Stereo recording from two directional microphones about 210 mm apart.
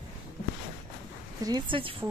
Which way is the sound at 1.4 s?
20° right (ahead or behind).